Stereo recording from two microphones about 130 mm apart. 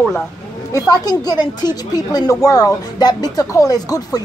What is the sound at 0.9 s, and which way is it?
Speech, 30° left (ahead or behind).